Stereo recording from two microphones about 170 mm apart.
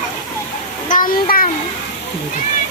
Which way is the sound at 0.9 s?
55° left (ahead or behind).